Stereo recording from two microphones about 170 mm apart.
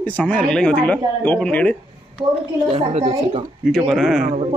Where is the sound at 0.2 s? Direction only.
10° left (ahead or behind).